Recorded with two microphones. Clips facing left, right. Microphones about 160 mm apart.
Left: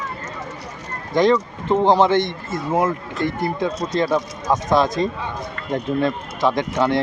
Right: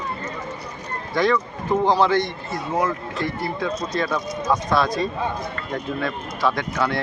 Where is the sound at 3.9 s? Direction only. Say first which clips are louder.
Left 4 dB; 25° left (ahead or behind).